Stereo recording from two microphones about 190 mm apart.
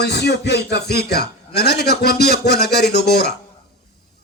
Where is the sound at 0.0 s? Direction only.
60° left (ahead or behind).